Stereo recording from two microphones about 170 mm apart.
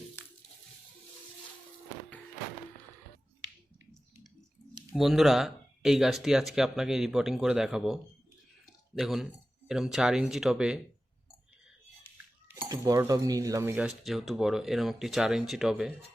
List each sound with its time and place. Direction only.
0.2 s a sound: 15° left (ahead or behind)
4.9 s speech: centre (ahead or behind)
9.0 s speech: centre (ahead or behind)
12.1 s dishes: 10° right (ahead or behind)
12.8 s speech: 20° right (ahead or behind)
13.8 s speech: centre (ahead or behind)